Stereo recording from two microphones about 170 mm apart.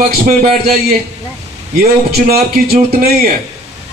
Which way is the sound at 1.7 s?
65° right (ahead or behind).